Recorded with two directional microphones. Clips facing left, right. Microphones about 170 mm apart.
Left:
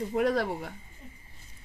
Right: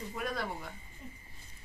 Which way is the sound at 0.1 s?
75° left (ahead or behind).